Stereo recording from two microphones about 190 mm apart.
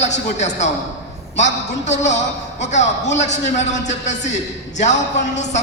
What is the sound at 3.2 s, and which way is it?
A woman's voice, 40° left (ahead or behind).